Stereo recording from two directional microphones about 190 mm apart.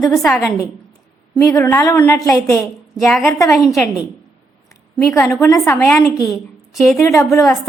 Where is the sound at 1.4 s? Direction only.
15° left (ahead or behind).